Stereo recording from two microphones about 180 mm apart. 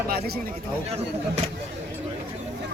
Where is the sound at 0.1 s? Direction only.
55° right (ahead or behind).